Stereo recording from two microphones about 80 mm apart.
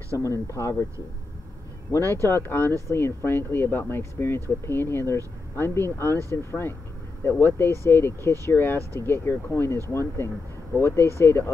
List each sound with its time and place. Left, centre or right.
0.2 s speech: left
1.9 s speech: left